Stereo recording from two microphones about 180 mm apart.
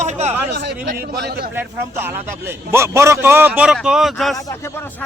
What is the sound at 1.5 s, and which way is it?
A man's voice, 10° right (ahead or behind).